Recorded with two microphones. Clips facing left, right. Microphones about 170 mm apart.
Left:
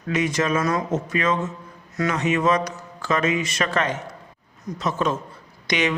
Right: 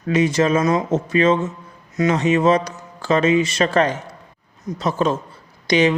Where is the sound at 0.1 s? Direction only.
30° right (ahead or behind).